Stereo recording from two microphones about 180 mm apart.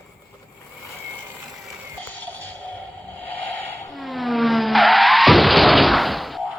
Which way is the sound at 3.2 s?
10° left (ahead or behind).